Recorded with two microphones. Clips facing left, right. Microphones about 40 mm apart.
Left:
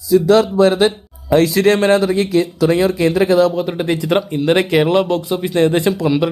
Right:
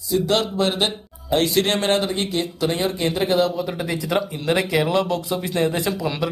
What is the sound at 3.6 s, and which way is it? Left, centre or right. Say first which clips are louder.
Speech: left 6 dB; left.